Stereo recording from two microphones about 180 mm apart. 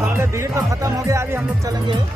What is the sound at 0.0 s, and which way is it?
Speech, 10° right (ahead or behind).